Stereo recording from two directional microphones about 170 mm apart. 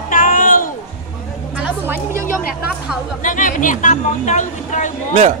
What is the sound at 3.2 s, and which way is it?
Speech, 50° left (ahead or behind).